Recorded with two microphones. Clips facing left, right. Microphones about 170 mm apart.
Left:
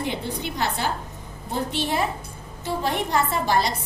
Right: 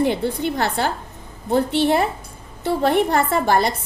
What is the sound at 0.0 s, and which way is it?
A woman's voice, 55° right (ahead or behind).